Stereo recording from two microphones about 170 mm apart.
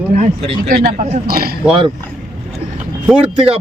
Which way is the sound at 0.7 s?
45° right (ahead or behind).